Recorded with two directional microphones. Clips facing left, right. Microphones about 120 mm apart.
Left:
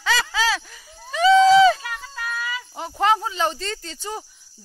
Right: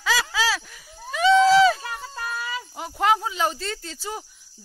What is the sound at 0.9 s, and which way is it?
Run, 5° right (ahead or behind).